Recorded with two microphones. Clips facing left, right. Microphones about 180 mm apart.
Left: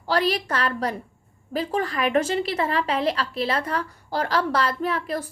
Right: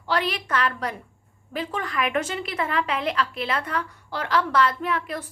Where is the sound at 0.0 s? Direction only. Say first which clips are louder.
Left 3 dB; 35° left (ahead or behind).